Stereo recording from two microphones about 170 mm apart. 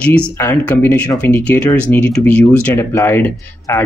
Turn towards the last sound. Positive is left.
turn(degrees=15)  # may be behind; listen again after turning